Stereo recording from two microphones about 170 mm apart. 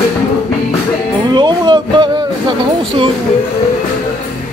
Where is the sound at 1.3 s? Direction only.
25° right (ahead or behind).